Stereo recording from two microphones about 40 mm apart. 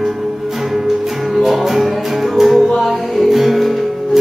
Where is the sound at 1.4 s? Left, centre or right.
Centre.